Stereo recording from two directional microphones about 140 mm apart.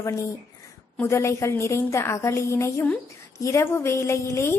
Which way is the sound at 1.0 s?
20° left (ahead or behind).